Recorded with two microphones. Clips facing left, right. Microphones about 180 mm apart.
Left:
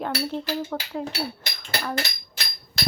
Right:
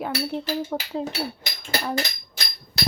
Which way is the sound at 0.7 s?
20° right (ahead or behind).